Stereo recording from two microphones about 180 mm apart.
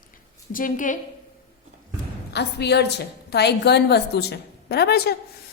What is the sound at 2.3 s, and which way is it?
A woman's voice, 65° left (ahead or behind).